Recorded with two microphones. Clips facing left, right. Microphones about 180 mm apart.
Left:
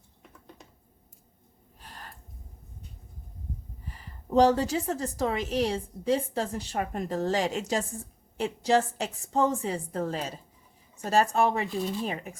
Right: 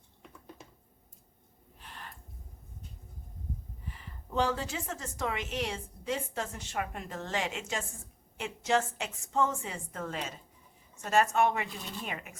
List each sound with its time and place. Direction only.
1.8 s gasp: 40° left (ahead or behind)
3.8 s a woman's voice: 40° left (ahead or behind)